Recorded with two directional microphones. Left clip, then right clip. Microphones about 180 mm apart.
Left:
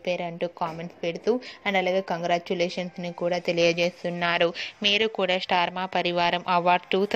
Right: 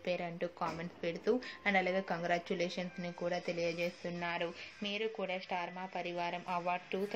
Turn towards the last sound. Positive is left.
turn(degrees=40)  # may be behind; listen again after turning